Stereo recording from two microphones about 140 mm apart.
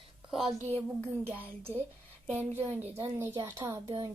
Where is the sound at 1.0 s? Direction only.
15° right (ahead or behind).